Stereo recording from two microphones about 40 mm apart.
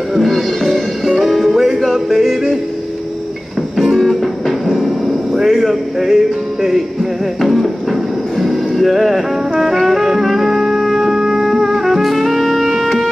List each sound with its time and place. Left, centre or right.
0.1 s music: centre
1.8 s yodeling: centre
3.7 s music: centre